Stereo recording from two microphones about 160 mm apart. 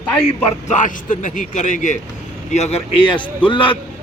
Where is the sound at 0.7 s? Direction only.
55° left (ahead or behind).